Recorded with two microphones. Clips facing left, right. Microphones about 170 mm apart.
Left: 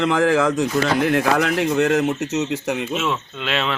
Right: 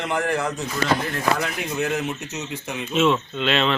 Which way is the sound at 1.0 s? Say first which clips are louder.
Left 6 dB; 70° left (ahead or behind).